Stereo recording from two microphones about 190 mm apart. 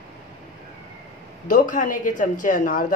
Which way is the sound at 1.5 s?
45° left (ahead or behind).